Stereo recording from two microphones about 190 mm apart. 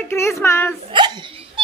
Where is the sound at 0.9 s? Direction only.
25° right (ahead or behind).